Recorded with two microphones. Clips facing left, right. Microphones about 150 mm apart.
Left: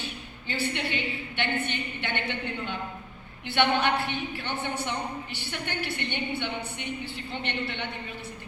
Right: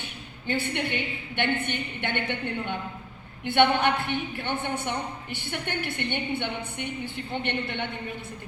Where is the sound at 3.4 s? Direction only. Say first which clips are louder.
Right 3 dB; 50° right (ahead or behind).